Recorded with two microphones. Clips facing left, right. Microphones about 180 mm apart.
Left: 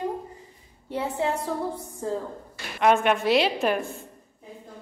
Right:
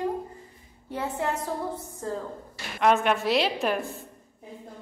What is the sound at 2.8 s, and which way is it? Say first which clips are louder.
A woman's voice: left 2 dB; centre (ahead or behind).